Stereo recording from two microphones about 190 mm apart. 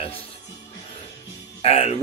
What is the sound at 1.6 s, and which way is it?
Speech, 35° left (ahead or behind).